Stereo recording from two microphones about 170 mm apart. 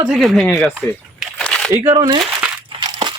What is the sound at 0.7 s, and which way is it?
Crumpling, centre (ahead or behind).